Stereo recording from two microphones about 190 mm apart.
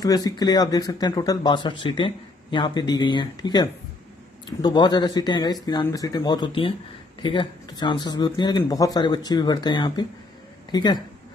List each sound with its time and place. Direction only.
0.0 s speech: 20° left (ahead or behind)